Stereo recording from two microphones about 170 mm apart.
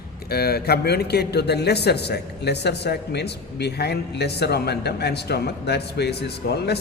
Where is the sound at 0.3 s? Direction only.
65° left (ahead or behind).